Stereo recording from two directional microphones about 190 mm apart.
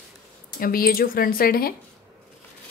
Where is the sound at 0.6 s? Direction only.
50° left (ahead or behind).